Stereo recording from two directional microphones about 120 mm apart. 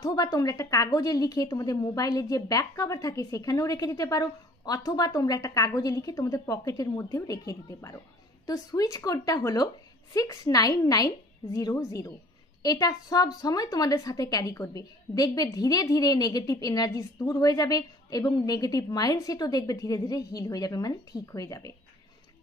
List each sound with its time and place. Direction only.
0.0 s a woman's voice: 30° left (ahead or behind)